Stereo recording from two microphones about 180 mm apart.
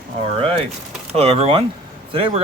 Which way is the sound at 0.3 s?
30° right (ahead or behind).